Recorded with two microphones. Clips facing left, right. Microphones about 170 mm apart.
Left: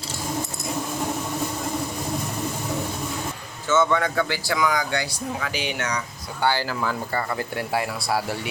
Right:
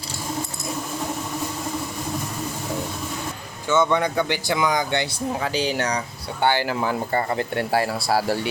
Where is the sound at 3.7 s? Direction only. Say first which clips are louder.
Right 1 dB; 15° right (ahead or behind); by 6.0 s 35° right (ahead or behind).